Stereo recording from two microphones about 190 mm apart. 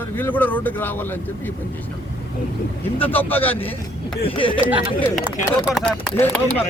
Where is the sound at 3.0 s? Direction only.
10° left (ahead or behind).